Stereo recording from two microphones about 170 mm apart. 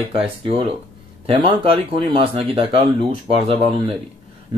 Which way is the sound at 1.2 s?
30° right (ahead or behind).